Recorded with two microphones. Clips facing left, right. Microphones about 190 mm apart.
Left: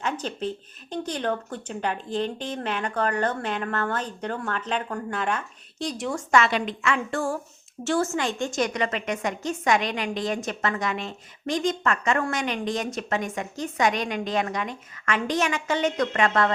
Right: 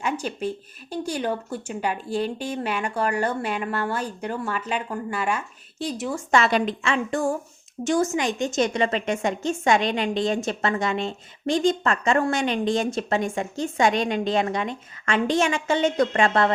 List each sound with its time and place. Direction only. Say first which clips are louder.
0.0 s speech: right 2 dB; 10° right (ahead or behind)
6.3 s a woman's voice: right 2 dB; 35° right (ahead or behind)
6.9 s a woman's voice: right 3 dB; 15° right (ahead or behind)